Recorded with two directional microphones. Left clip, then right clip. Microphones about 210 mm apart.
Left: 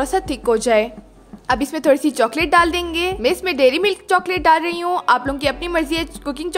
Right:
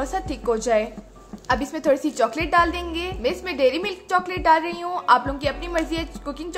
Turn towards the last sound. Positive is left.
turn(degrees=50)  # may be behind; listen again after turning